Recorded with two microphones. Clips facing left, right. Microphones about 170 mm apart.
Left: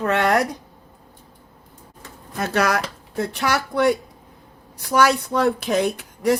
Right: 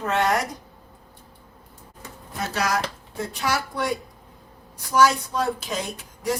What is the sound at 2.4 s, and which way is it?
Speech, 60° left (ahead or behind).